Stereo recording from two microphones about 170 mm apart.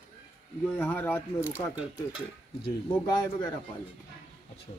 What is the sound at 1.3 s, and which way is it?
Speech, 10° right (ahead or behind).